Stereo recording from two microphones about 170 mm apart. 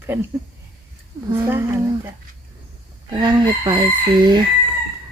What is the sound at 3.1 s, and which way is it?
Speech, 25° right (ahead or behind).